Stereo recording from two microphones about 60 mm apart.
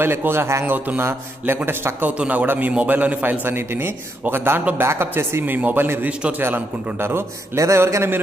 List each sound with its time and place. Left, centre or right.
0.0 s a man's voice: right
0.7 s a man's voice: right
2.1 s speech: right
2.4 s a man's voice: right
2.7 s a man's voice: right
7.5 s a man's voice: right